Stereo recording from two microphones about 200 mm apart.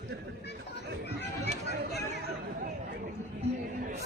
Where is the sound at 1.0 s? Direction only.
55° left (ahead or behind).